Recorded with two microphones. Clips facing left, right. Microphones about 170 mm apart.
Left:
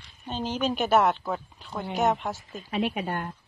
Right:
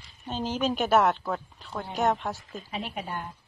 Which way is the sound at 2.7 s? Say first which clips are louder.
Left 7 dB; 70° left (ahead or behind).